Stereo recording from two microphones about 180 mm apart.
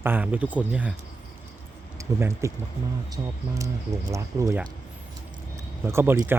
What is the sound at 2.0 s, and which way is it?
Speech, 15° right (ahead or behind).